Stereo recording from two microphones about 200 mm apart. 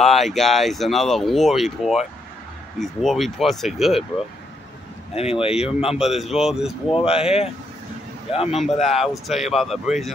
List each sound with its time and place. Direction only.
0.0 s speech: centre (ahead or behind)
5.1 s speech: 30° left (ahead or behind)
5.9 s speech: centre (ahead or behind)
6.9 s speech: 30° left (ahead or behind)
8.8 s speech: centre (ahead or behind)